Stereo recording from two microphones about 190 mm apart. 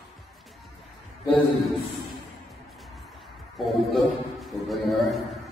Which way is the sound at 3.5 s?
Centre (ahead or behind).